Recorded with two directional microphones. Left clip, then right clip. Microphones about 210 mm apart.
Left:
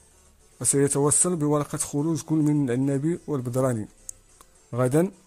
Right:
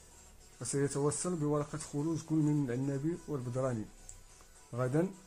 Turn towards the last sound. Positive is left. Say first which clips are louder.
# left 11 dB
turn(degrees=50)  # may be behind; listen again after turning